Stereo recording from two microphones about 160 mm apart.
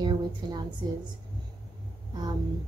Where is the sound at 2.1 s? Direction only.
25° right (ahead or behind).